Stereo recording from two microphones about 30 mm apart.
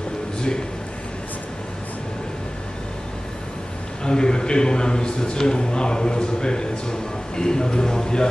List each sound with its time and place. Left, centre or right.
4.0 s a man's voice: left